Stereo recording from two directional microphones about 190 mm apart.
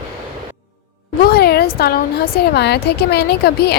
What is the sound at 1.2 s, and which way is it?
A woman's voice, 55° left (ahead or behind).